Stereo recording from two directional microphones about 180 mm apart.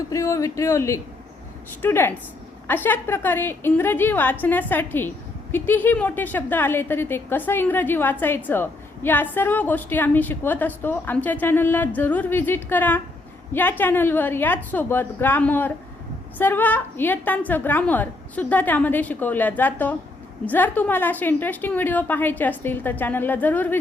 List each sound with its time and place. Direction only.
0.1 s a woman's voice: 15° left (ahead or behind)